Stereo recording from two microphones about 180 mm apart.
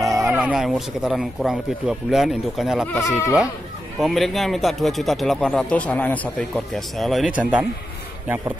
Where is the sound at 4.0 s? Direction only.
Centre (ahead or behind).